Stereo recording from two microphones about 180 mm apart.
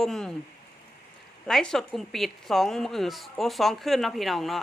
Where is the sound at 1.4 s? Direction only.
5° left (ahead or behind).